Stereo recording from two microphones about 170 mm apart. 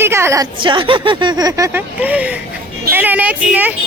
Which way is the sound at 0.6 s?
30° right (ahead or behind).